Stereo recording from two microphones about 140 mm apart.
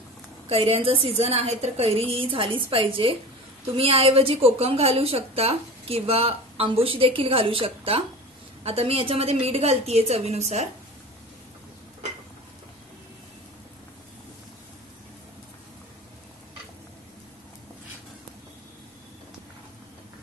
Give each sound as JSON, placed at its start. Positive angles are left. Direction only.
{"t": 0.5, "sound": "a woman's voice", "side_deg": -40}